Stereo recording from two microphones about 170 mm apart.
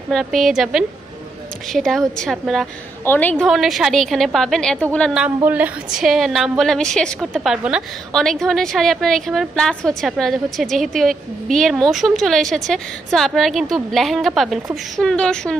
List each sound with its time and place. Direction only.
0.1 s a woman's voice: centre (ahead or behind)
3.4 s a woman's voice: centre (ahead or behind)
5.2 s a woman's voice: 10° right (ahead or behind)